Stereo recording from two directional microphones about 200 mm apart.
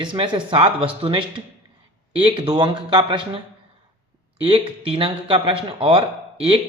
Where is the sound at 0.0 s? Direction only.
25° right (ahead or behind).